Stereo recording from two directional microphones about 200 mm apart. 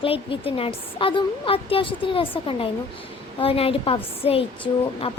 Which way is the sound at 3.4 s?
30° left (ahead or behind).